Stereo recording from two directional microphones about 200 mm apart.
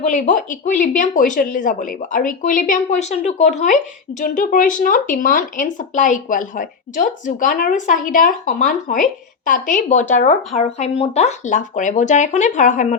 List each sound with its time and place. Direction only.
0.0 s speech: 40° left (ahead or behind)